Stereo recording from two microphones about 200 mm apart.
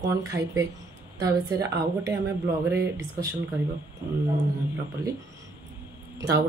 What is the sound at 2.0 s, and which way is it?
Speech, 15° right (ahead or behind).